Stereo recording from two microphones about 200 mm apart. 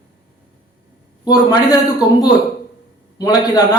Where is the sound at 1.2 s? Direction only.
20° left (ahead or behind).